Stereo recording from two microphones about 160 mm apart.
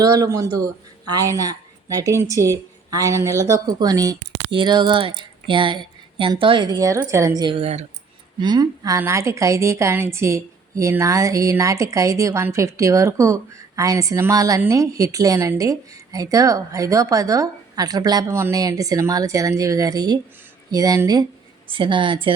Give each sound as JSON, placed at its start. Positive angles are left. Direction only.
{"t": 0.0, "sound": "a woman's voice", "side_deg": -20}
{"t": 7.4, "sound": "a woman's voice", "side_deg": -35}
{"t": 8.4, "sound": "a woman's voice", "side_deg": -25}